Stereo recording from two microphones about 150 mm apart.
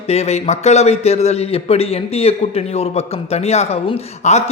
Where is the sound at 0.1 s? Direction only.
45° left (ahead or behind).